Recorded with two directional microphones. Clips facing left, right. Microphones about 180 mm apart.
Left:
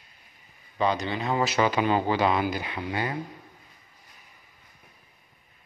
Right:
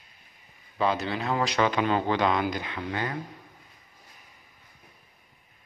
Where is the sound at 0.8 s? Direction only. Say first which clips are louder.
Left 1 dB; centre (ahead or behind).